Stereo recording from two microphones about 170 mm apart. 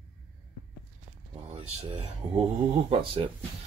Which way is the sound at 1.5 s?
40° right (ahead or behind).